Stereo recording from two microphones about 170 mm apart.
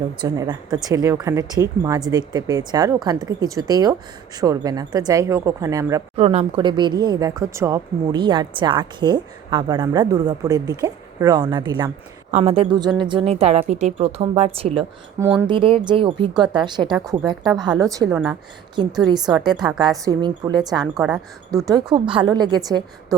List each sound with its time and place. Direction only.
0.2 s speech: 25° right (ahead or behind)
6.1 s speech: 35° right (ahead or behind)
12.3 s a woman's voice: 35° right (ahead or behind); by 18.1 s 20° right (ahead or behind)
18.1 s speech: 5° right (ahead or behind)
18.8 s speech: 25° right (ahead or behind)